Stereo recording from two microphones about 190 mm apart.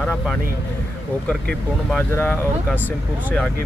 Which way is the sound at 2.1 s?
10° left (ahead or behind).